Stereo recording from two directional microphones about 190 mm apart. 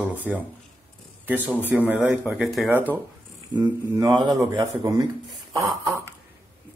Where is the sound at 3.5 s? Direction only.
20° right (ahead or behind).